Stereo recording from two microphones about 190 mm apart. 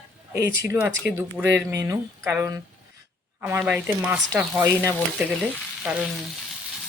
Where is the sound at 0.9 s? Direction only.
80° right.